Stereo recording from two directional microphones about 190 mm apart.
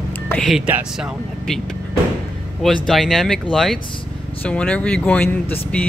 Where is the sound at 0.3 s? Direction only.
Centre (ahead or behind).